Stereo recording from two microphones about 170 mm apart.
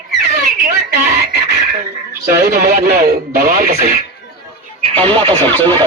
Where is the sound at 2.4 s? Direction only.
55° right (ahead or behind).